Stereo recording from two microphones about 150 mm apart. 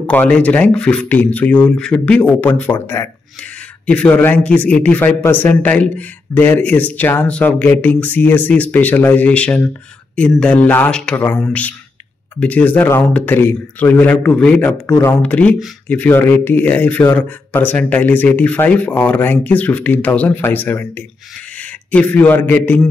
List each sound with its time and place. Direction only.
0.0 s a man's voice: 10° left (ahead or behind)
15.0 s speech: 20° left (ahead or behind)
15.2 s a man's voice: 10° left (ahead or behind)